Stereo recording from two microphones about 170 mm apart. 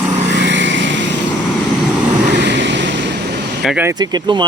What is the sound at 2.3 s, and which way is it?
Vehicle, 90° right.